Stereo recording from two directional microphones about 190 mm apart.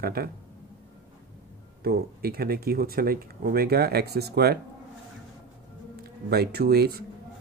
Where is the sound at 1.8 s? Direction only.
55° right (ahead or behind).